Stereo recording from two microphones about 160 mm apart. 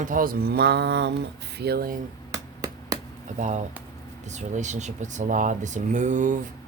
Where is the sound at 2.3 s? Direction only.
20° right (ahead or behind).